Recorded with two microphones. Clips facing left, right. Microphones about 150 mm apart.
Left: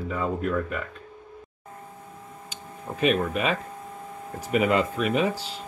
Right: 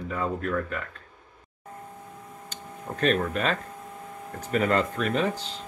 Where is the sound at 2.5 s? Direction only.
5° left (ahead or behind).